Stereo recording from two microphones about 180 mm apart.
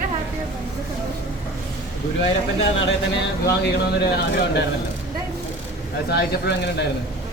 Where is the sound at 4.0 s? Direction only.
65° left (ahead or behind).